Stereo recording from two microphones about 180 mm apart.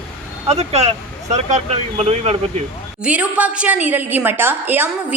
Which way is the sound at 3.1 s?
10° right (ahead or behind).